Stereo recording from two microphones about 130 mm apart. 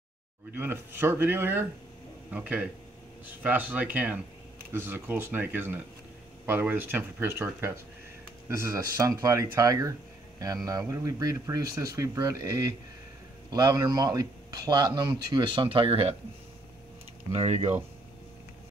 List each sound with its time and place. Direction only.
0.5 s speech: 15° right (ahead or behind); by 16.2 s 50° right (ahead or behind)
17.3 s speech: 55° right (ahead or behind)